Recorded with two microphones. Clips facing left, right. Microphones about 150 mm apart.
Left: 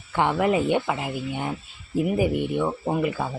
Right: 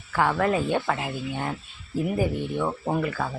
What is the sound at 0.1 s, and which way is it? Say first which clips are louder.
Speech: left 1 dB; 20° left (ahead or behind).